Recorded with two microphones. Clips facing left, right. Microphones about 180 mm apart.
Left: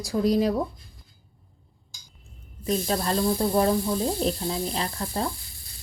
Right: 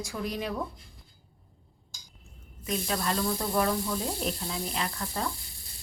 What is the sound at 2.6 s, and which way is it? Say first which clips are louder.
Snake: left 5 dB; 35° left (ahead or behind).